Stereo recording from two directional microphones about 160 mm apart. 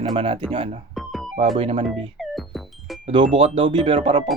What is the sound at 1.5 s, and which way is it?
Speech, 40° right (ahead or behind).